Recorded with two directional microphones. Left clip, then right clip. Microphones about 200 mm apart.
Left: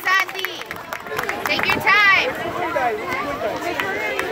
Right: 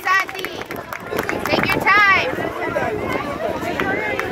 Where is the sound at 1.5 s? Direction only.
30° right (ahead or behind).